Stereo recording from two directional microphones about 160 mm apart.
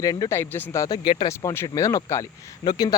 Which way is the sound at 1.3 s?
20° left (ahead or behind).